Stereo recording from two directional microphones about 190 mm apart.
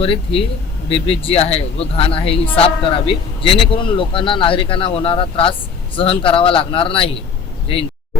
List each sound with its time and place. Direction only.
0.0 s speech: 30° left (ahead or behind)